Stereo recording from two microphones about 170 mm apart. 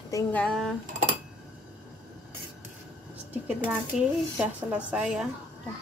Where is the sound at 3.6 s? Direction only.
10° right (ahead or behind).